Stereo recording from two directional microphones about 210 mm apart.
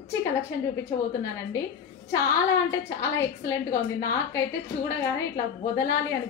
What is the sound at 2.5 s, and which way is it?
A woman's voice, 15° left (ahead or behind).